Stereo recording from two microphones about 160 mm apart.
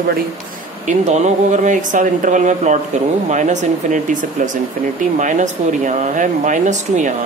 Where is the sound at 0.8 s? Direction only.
45° right (ahead or behind).